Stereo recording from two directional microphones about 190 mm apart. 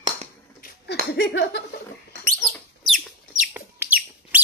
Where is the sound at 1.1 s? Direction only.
60° left (ahead or behind).